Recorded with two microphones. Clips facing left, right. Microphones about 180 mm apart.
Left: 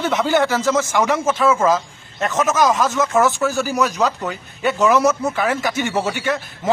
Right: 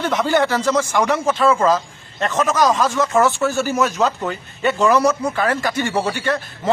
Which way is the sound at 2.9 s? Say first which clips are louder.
Even; centre (ahead or behind).